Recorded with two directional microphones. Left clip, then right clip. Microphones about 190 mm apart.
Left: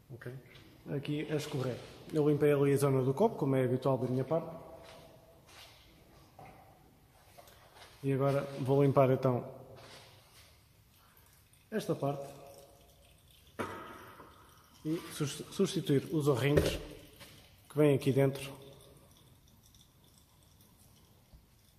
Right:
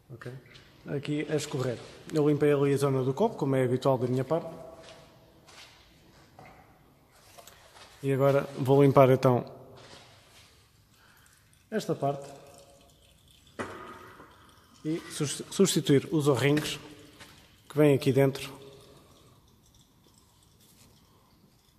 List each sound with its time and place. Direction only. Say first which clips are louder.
0.8 s speech: right 5 dB; 50° right (ahead or behind)
2.1 s speech: right 4 dB; 30° right (ahead or behind)
4.3 s speech: right 3 dB; 60° right (ahead or behind)
8.0 s speech: right 7 dB; 60° right (ahead or behind)
8.6 s speech: right 7 dB; 40° right (ahead or behind)
11.7 s speech: right 5 dB; 45° right (ahead or behind)
15.1 s speech: right 10 dB; 50° right (ahead or behind); by 18.5 s 30° right (ahead or behind)